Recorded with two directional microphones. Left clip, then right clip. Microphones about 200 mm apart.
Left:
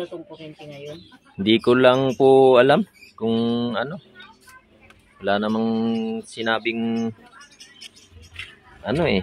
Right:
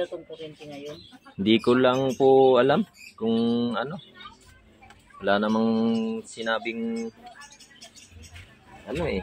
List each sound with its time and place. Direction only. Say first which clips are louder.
1.4 s speech: left 5 dB; 15° left (ahead or behind)
5.2 s mantra: left 1 dB; 15° left (ahead or behind)
6.3 s speech: left 6 dB; 30° left (ahead or behind)
8.9 s a man's voice: left 7 dB; 45° left (ahead or behind)